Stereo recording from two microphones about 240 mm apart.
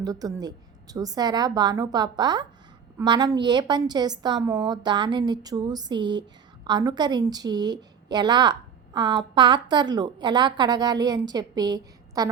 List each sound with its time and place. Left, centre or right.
0.0 s a woman's voice: centre